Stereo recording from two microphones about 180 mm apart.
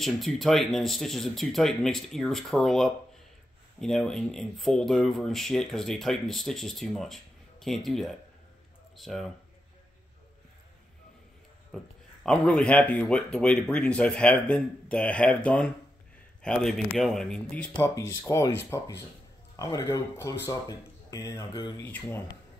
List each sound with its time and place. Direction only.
0.0 s speech: centre (ahead or behind)
11.7 s speech: 5° left (ahead or behind)
17.7 s speech: 15° left (ahead or behind)